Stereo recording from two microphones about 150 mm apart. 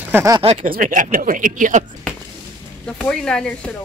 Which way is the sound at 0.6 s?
65° right (ahead or behind).